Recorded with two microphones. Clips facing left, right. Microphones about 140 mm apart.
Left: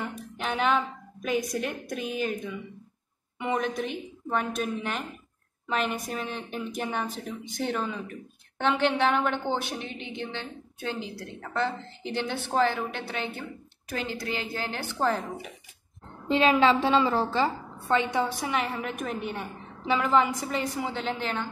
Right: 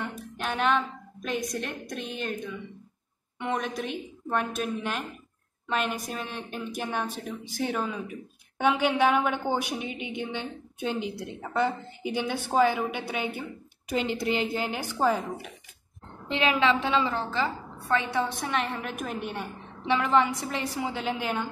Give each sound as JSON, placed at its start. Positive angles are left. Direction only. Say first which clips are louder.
{"t": 0.4, "sound": "music", "louder": "even", "side_deg": 0}
{"t": 1.2, "sound": "a woman's voice", "louder": "left 3 dB", "side_deg": 5}
{"t": 3.3, "sound": "a woman's voice", "louder": "left 2 dB", "side_deg": 5}
{"t": 16.3, "sound": "a woman's voice", "louder": "left 3 dB", "side_deg": 35}
{"t": 17.7, "sound": "a woman's voice", "louder": "left 1 dB", "side_deg": 25}
{"t": 18.2, "sound": "a woman's voice", "louder": "left 1 dB", "side_deg": 10}